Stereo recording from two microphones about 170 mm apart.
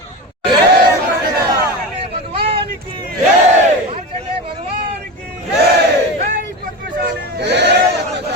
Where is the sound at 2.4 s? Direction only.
30° right (ahead or behind).